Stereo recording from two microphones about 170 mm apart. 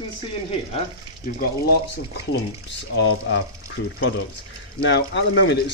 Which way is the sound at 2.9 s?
90° left.